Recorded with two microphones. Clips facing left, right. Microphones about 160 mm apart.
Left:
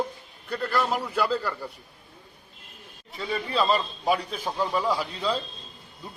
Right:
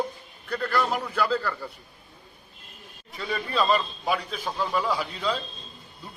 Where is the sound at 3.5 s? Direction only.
35° left (ahead or behind).